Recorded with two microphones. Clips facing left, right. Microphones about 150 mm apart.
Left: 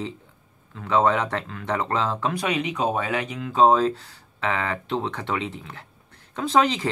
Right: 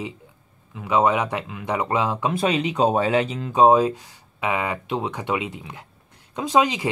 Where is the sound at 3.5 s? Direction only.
15° right (ahead or behind).